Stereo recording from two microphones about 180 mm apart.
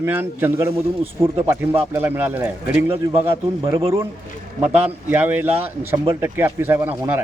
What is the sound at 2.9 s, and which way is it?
Speech, 35° right (ahead or behind).